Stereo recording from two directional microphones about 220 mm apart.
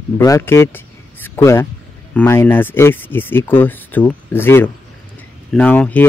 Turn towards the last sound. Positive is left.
turn(degrees=5)  # may be behind; listen again after turning